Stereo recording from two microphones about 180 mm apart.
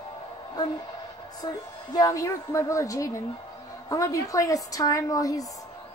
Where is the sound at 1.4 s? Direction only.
20° left (ahead or behind).